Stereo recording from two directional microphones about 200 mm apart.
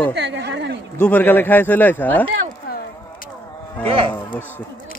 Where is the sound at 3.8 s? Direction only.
25° right (ahead or behind).